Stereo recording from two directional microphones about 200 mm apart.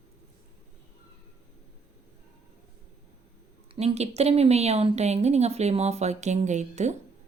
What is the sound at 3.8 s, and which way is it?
A woman's voice, 30° right (ahead or behind).